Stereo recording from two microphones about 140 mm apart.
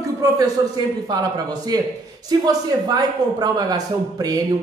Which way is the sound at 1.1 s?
30° right (ahead or behind).